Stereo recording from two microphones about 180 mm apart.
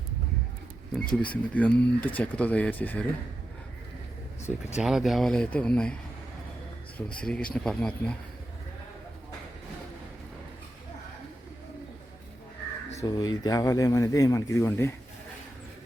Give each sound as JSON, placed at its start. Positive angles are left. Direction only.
{"t": 0.9, "sound": "speech", "side_deg": 5}
{"t": 4.8, "sound": "speech", "side_deg": 0}
{"t": 7.1, "sound": "speech", "side_deg": 5}
{"t": 13.0, "sound": "speech", "side_deg": 20}